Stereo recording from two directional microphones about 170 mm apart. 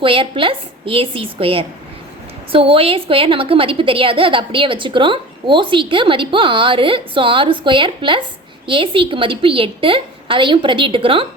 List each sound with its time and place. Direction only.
0.0 s a woman's voice: 30° right (ahead or behind)